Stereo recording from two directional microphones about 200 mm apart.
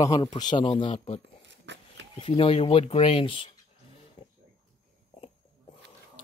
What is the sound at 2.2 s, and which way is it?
Speech, 25° left (ahead or behind).